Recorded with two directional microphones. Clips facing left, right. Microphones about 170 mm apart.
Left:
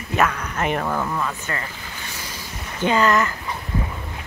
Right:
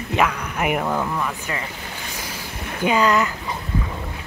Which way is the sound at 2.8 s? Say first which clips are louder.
Even; 10° right (ahead or behind).